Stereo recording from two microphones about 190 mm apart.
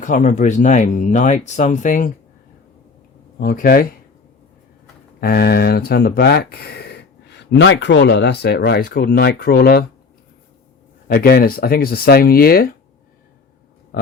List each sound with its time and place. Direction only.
0.0 s speech: 40° left (ahead or behind)
3.4 s speech: 50° left (ahead or behind)
5.2 s speech: 55° left (ahead or behind)
11.1 s speech: 55° left (ahead or behind)